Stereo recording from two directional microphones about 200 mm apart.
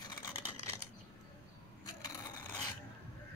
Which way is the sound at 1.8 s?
20° left (ahead or behind).